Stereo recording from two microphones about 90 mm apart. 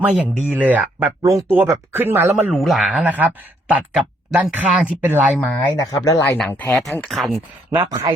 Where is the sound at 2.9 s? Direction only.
15° right (ahead or behind).